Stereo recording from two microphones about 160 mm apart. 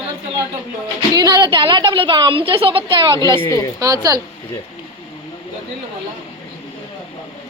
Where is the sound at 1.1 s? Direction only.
25° right (ahead or behind).